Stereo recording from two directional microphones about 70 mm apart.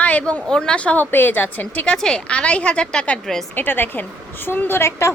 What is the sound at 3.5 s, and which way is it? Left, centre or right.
A woman's voice, left.